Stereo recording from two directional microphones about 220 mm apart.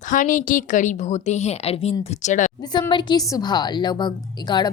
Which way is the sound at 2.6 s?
20° left (ahead or behind).